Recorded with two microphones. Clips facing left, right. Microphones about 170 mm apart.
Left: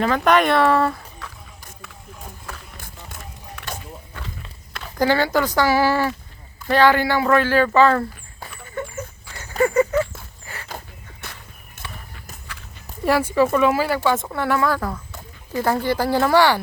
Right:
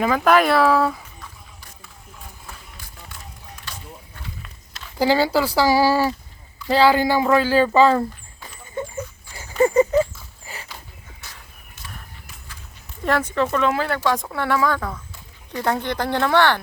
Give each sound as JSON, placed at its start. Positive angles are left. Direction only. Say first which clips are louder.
{"t": 0.0, "sound": "speech", "louder": "even", "side_deg": -5}
{"t": 2.7, "sound": "run", "louder": "left 3 dB", "side_deg": 50}
{"t": 3.6, "sound": "a sound", "louder": "left 6 dB", "side_deg": 70}
{"t": 4.9, "sound": "speech", "louder": "even", "side_deg": -10}
{"t": 9.3, "sound": "horse", "louder": "right 2 dB", "side_deg": -15}
{"t": 10.4, "sound": "dog", "louder": "right 1 dB", "side_deg": -15}
{"t": 11.2, "sound": "walk", "louder": "left 7 dB", "side_deg": 60}
{"t": 11.8, "sound": "a sound", "louder": "left 5 dB", "side_deg": 50}
{"t": 13.1, "sound": "speech", "louder": "left 3 dB", "side_deg": 10}